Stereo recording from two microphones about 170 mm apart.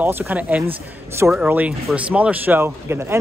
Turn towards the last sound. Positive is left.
turn(degrees=-15)  # may be behind; listen again after turning